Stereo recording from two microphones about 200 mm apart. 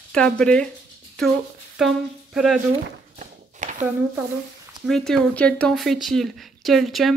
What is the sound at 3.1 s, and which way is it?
Walk, 35° right (ahead or behind).